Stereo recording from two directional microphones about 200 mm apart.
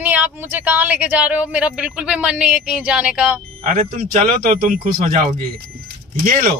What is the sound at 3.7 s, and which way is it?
Speech, 40° right (ahead or behind).